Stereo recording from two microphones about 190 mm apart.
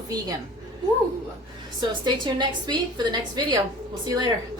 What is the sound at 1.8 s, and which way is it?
A woman's voice, 25° right (ahead or behind).